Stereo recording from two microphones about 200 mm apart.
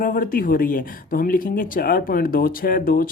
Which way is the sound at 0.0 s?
45° left (ahead or behind).